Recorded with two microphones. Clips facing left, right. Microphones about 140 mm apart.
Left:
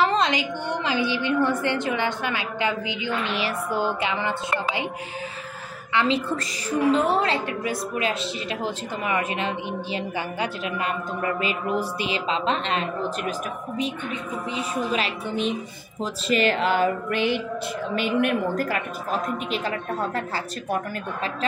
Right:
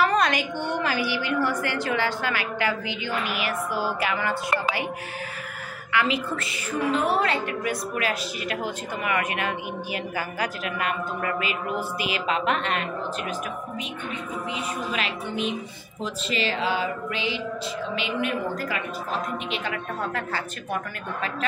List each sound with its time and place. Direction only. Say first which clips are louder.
0.0 s a woman's voice: left 1 dB; 20° left (ahead or behind)
5.9 s a woman's voice: left 2 dB; 30° left (ahead or behind)
14.5 s a woman's voice: left 5 dB; 35° left (ahead or behind)
16.0 s speech: left 5 dB; 50° left (ahead or behind)
19.5 s a woman's voice: left 3 dB; 35° left (ahead or behind)